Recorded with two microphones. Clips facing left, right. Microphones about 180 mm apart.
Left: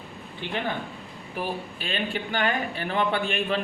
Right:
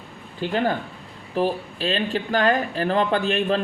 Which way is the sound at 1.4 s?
35° right (ahead or behind).